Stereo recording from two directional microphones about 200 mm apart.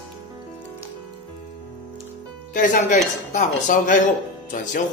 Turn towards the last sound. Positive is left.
turn(degrees=40)  # may be behind; listen again after turning